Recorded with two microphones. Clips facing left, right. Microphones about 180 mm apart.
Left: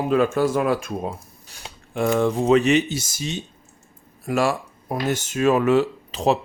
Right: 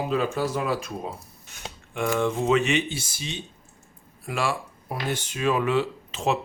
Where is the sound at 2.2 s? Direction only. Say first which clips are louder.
Left 4 dB; 35° left (ahead or behind).